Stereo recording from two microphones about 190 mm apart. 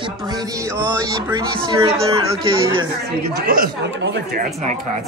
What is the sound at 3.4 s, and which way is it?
Speech, 50° right (ahead or behind).